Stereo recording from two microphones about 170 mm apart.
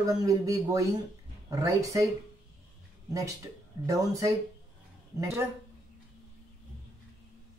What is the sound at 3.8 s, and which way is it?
Speech, 20° right (ahead or behind).